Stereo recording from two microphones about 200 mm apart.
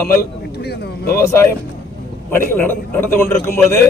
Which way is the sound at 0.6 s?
55° left (ahead or behind).